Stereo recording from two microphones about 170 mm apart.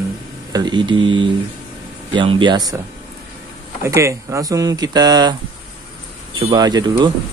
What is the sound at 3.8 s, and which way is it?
Speech, 15° right (ahead or behind).